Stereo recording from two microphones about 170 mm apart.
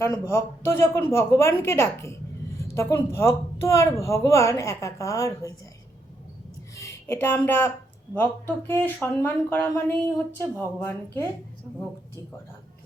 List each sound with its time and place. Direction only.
0.0 s speech: 15° left (ahead or behind)
6.7 s speech: 15° left (ahead or behind)